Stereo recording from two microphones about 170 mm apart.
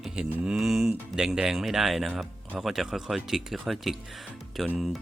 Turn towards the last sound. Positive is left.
turn(degrees=0)  # may be behind; listen again after turning